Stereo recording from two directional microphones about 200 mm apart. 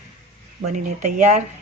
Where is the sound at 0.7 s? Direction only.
40° right (ahead or behind).